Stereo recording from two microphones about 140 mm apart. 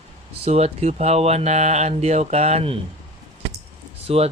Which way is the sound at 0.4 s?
50° right (ahead or behind).